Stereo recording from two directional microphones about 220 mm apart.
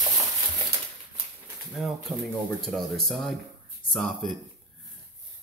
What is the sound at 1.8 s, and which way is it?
Speech, centre (ahead or behind).